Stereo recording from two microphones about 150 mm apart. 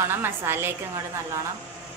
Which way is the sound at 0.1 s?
15° right (ahead or behind).